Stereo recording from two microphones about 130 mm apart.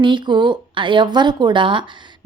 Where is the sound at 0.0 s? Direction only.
35° right (ahead or behind).